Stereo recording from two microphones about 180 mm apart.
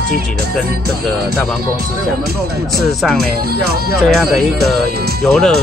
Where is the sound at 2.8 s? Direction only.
Centre (ahead or behind).